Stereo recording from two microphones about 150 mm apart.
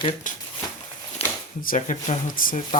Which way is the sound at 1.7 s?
50° left (ahead or behind).